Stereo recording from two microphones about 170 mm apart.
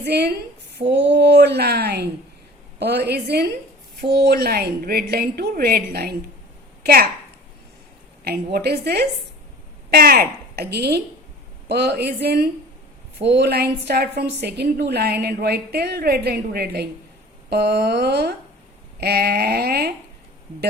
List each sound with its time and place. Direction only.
0.0 s a woman's voice: 75° right (ahead or behind)
0.8 s a sound: 90° right; by 2.0 s 70° right (ahead or behind)
2.7 s a woman's voice: 75° right (ahead or behind)
8.2 s a woman's voice: 65° right (ahead or behind)